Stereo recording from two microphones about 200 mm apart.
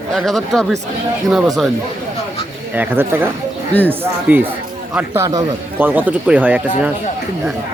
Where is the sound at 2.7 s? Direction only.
10° right (ahead or behind).